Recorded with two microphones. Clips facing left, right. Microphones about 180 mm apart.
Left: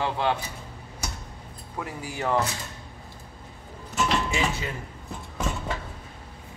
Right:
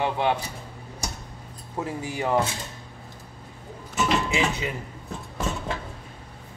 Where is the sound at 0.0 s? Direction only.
20° right (ahead or behind).